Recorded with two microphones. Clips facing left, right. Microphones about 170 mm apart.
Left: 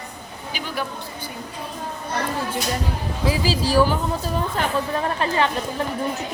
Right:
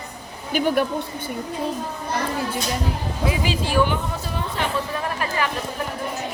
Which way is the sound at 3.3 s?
35° left (ahead or behind).